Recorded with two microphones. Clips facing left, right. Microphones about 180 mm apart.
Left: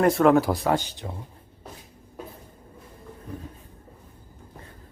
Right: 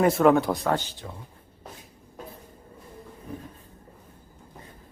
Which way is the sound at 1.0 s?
30° left (ahead or behind).